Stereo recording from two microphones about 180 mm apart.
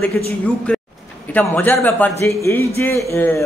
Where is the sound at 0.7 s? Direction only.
5° left (ahead or behind).